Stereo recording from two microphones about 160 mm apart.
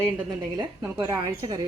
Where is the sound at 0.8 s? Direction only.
20° right (ahead or behind).